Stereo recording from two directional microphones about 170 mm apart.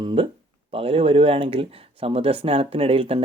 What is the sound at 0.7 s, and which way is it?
Speech, 35° right (ahead or behind).